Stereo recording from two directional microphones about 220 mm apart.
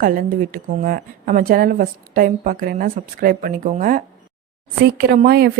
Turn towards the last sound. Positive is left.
turn(degrees=-45)  # may be behind; listen again after turning